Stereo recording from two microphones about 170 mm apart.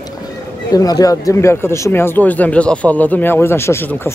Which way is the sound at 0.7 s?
20° left (ahead or behind).